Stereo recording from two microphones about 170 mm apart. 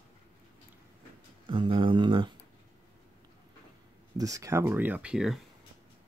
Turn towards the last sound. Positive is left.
turn(degrees=0)  # may be behind; listen again after turning